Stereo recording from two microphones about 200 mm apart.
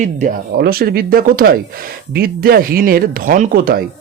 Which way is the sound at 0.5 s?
50° right (ahead or behind).